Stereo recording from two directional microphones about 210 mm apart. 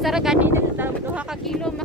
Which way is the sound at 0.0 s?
Centre (ahead or behind).